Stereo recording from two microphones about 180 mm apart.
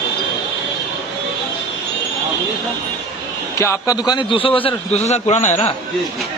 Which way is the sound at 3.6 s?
15° left (ahead or behind).